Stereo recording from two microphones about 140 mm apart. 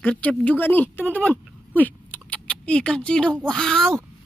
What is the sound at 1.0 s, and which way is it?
Fowl, 10° left (ahead or behind).